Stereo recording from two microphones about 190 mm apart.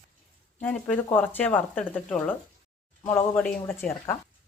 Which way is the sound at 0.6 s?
10° left (ahead or behind).